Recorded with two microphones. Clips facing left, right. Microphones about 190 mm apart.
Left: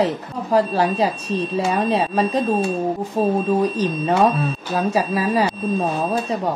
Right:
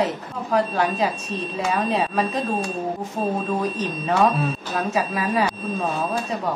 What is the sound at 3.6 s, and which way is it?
A woman's voice, 35° left (ahead or behind).